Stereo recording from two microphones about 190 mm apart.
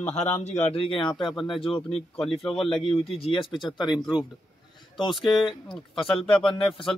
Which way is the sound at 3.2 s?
25° left (ahead or behind).